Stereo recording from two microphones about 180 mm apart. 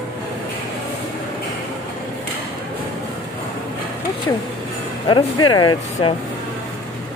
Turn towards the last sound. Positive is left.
turn(degrees=25)  # may be behind; listen again after turning